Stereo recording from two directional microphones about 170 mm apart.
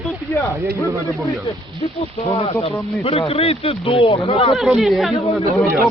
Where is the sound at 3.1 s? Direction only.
35° left (ahead or behind).